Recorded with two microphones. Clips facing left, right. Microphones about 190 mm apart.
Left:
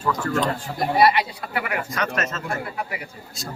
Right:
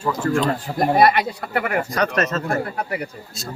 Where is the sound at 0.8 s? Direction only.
50° right (ahead or behind).